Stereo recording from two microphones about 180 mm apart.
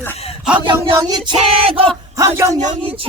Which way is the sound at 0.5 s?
25° right (ahead or behind).